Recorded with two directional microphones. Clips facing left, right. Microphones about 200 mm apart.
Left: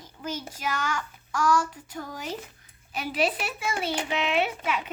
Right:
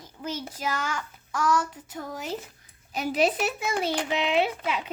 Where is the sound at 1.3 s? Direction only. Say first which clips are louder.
Left 1 dB; 20° right (ahead or behind).